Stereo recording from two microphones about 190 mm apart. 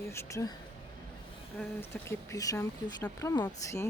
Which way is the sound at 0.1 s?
15° left (ahead or behind).